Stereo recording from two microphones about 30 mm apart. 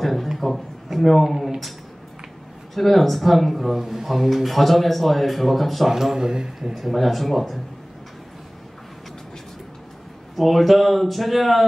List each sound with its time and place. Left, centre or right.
0.0 s a sound: centre
0.9 s speech: centre
2.7 s speech: centre
5.9 s speech: centre
6.7 s speech: centre
10.3 s speech: centre